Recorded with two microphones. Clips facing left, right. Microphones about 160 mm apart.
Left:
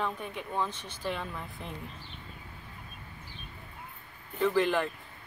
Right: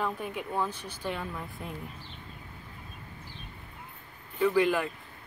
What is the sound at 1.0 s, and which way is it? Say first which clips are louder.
Speech: even; 5° right (ahead or behind).